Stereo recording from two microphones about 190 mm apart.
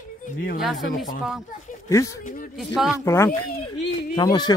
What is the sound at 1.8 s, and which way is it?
Speech, 15° left (ahead or behind).